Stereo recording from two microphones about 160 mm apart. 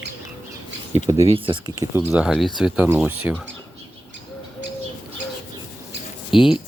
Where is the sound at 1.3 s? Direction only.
35° right (ahead or behind).